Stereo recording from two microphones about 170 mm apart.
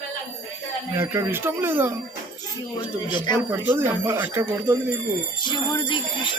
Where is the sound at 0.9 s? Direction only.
15° right (ahead or behind).